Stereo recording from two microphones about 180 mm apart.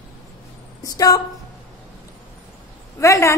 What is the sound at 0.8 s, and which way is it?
Speech, 20° left (ahead or behind).